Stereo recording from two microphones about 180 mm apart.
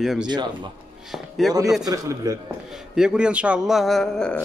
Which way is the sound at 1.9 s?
20° right (ahead or behind).